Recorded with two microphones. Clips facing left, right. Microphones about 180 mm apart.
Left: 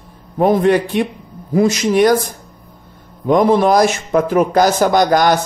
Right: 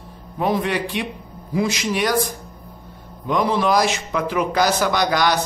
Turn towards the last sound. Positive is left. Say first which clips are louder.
# left 7 dB
turn(degrees=50)  # may be behind; listen again after turning